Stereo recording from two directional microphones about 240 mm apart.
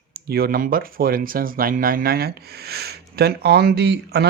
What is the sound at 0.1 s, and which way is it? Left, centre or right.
Speech, right.